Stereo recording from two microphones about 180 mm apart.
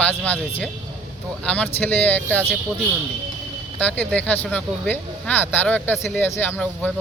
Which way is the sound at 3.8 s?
10° left (ahead or behind).